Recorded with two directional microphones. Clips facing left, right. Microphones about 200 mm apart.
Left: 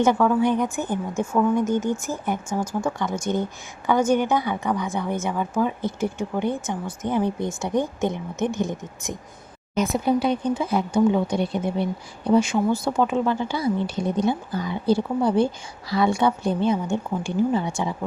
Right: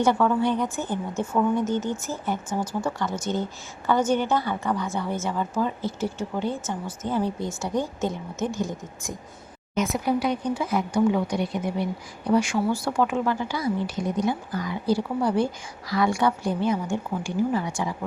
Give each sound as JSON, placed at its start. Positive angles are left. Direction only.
{"t": 0.0, "sound": "a woman's voice", "side_deg": 15}
{"t": 1.6, "sound": "speech", "side_deg": 50}
{"t": 2.0, "sound": "a woman's voice", "side_deg": 15}
{"t": 9.7, "sound": "speech", "side_deg": 30}